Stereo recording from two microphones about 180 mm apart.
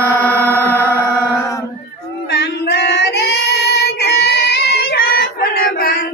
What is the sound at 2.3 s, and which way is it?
Child singing, 70° left (ahead or behind).